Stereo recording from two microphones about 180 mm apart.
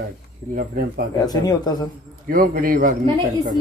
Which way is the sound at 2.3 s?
50° right (ahead or behind).